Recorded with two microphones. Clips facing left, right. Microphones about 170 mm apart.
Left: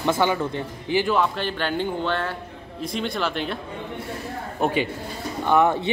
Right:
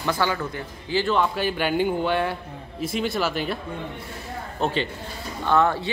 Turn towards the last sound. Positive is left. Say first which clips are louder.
# left 2 dB
turn(degrees=20)  # may be behind; listen again after turning